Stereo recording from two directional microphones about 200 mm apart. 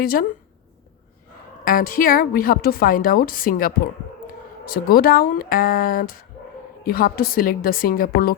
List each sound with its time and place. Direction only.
0.0 s a woman's voice: 45° left (ahead or behind)
1.6 s a woman's voice: 45° left (ahead or behind)